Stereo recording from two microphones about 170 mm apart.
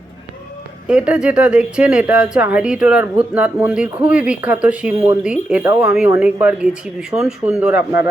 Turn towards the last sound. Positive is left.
turn(degrees=-5)  # may be behind; listen again after turning